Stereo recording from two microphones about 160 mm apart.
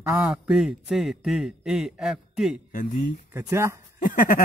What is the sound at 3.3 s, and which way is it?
Speech, 15° right (ahead or behind).